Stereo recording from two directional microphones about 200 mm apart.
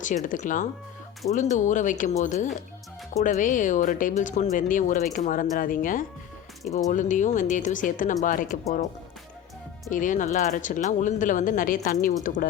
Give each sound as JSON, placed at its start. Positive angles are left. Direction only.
{"t": 0.0, "sound": "speech", "side_deg": 40}
{"t": 9.9, "sound": "speech", "side_deg": 40}